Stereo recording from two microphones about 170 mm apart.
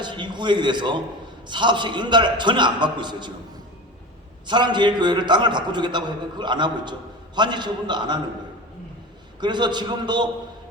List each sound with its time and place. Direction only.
0.0 s a man's voice: 25° right (ahead or behind)
4.4 s a man's voice: 25° right (ahead or behind)
9.4 s a man's voice: 25° right (ahead or behind)